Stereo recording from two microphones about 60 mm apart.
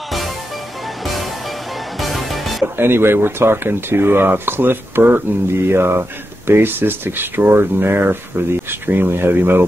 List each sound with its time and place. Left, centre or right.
2.0 s music: centre
2.6 s speech: right